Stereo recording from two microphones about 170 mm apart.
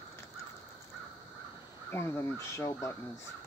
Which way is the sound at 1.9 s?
15° left (ahead or behind).